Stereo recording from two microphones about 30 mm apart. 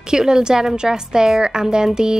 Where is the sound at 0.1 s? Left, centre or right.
Right.